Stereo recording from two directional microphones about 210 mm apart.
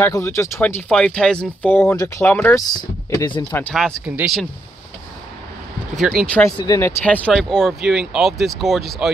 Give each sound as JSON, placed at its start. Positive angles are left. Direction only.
{"t": 0.0, "sound": "speech", "side_deg": 10}
{"t": 2.7, "sound": "speech", "side_deg": 20}
{"t": 3.5, "sound": "speech", "side_deg": 5}
{"t": 5.9, "sound": "speech", "side_deg": 0}